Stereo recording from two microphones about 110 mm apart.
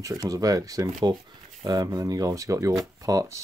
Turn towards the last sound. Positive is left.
turn(degrees=-30)  # may be behind; listen again after turning